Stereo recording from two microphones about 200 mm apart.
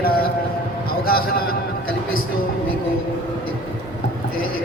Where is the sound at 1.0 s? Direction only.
50° left (ahead or behind).